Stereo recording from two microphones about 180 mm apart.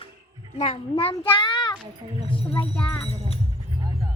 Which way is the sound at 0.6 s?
30° left (ahead or behind).